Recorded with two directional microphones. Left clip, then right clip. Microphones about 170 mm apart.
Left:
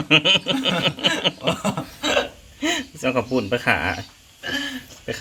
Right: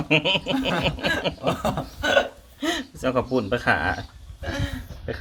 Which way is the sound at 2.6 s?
5° left (ahead or behind).